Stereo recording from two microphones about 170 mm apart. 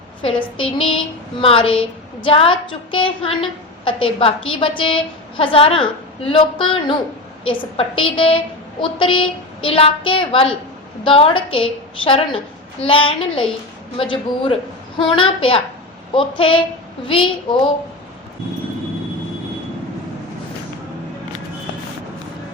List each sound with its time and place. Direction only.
0.2 s a woman's voice: 30° left (ahead or behind)